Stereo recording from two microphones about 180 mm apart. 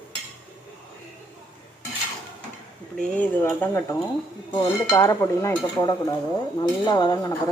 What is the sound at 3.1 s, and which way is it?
Speech, 10° left (ahead or behind).